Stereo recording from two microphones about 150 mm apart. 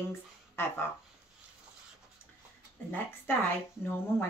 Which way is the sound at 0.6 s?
15° left (ahead or behind).